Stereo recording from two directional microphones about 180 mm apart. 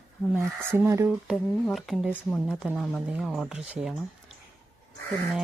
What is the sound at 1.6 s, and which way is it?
A woman's voice, centre (ahead or behind).